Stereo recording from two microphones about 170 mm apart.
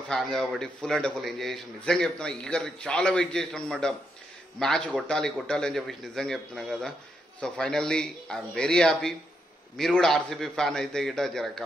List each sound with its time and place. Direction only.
0.1 s a man's voice: 5° left (ahead or behind)